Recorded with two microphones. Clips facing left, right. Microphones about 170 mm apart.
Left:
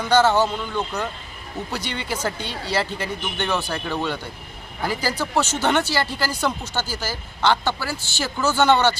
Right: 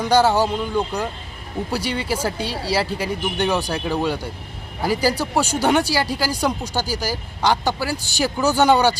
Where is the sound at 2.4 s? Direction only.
35° right (ahead or behind).